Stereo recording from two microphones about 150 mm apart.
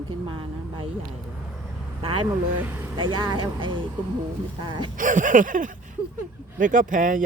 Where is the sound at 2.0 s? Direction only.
40° right (ahead or behind).